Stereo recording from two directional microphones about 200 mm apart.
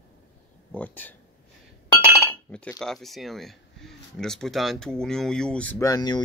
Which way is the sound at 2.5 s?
5° left (ahead or behind).